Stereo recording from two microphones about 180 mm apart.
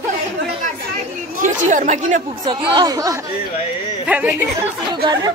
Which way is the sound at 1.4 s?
45° right (ahead or behind).